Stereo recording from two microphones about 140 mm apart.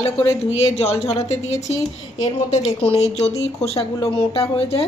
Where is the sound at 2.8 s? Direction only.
50° left (ahead or behind).